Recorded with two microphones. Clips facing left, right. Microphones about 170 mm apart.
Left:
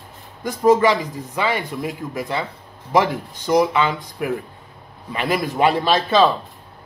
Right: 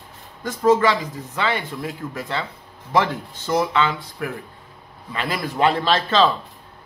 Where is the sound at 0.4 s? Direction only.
15° left (ahead or behind).